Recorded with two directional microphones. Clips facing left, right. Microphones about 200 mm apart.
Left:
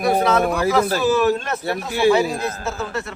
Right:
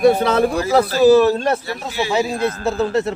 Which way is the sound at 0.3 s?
35° right (ahead or behind).